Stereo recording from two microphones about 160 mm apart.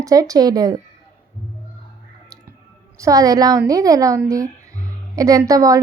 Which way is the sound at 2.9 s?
20° right (ahead or behind).